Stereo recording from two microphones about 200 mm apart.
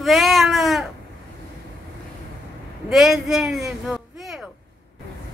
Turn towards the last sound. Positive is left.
turn(degrees=0)  # may be behind; listen again after turning